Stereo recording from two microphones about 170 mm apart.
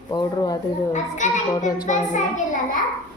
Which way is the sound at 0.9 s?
45° left (ahead or behind).